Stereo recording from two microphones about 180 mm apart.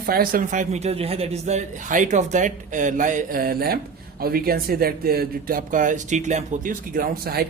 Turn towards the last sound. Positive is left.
turn(degrees=-55)  # may be behind; listen again after turning